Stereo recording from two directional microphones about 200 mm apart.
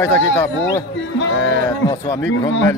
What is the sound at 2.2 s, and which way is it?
Speech, 70° left (ahead or behind).